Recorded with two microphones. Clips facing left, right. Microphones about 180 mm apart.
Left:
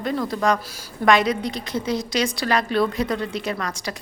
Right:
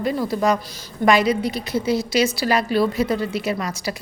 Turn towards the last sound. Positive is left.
turn(degrees=-10)  # may be behind; listen again after turning